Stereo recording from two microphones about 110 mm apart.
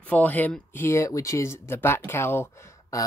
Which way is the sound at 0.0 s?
15° left (ahead or behind).